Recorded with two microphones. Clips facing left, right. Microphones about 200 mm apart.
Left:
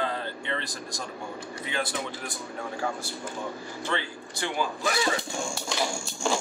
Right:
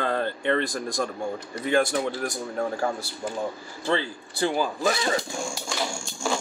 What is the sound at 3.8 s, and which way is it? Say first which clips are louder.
Speech: right 6 dB; 35° right (ahead or behind).